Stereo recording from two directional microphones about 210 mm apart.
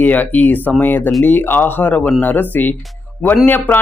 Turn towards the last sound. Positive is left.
turn(degrees=10)  # may be behind; listen again after turning